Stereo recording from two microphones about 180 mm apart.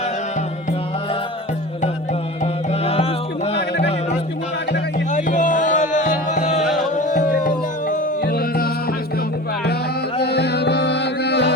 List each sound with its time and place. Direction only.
2.4 s music: 35° left (ahead or behind)
5.1 s music: 45° left (ahead or behind)
10.2 s music: 65° left (ahead or behind)